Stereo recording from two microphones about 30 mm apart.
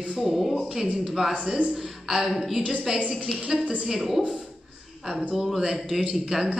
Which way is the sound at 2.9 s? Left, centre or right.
Right.